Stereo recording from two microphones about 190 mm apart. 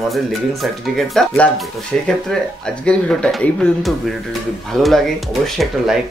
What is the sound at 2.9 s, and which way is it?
Speech, 5° left (ahead or behind).